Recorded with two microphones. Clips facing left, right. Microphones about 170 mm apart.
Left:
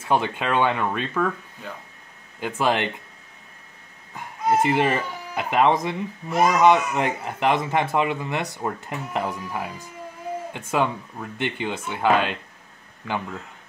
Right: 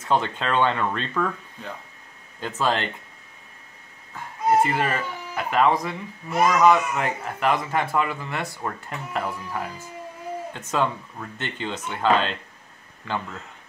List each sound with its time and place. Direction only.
0.0 s speech: 10° left (ahead or behind)
4.1 s speech: 15° left (ahead or behind)